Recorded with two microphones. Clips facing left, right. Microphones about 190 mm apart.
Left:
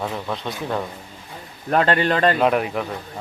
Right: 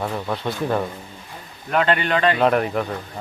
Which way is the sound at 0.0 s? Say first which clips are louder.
Right 2 dB; centre (ahead or behind).